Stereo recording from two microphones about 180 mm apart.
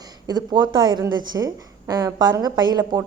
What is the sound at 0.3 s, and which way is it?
A woman's voice, 25° right (ahead or behind).